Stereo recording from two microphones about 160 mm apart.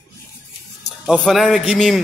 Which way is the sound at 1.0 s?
Centre (ahead or behind).